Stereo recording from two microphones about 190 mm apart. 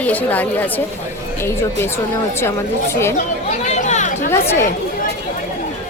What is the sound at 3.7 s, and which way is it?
Chatter, 35° left (ahead or behind).